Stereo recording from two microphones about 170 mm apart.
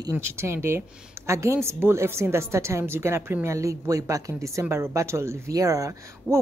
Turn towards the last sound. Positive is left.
turn(degrees=-20)  # may be behind; listen again after turning